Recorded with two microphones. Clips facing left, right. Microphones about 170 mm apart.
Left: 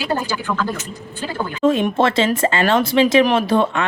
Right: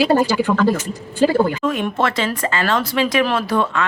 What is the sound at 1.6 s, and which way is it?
Speech, 25° left (ahead or behind).